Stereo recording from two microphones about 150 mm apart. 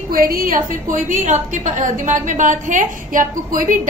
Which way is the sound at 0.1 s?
75° right (ahead or behind).